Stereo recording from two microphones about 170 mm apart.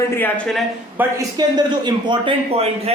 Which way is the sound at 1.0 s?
20° right (ahead or behind).